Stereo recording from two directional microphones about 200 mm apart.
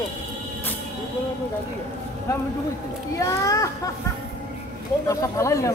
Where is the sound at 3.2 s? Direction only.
15° left (ahead or behind).